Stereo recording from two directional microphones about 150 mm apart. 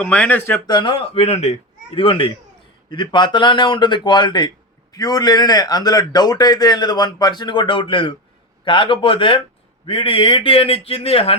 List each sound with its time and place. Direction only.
0.0 s speech: 10° left (ahead or behind)
0.7 s a man's voice: 30° left (ahead or behind)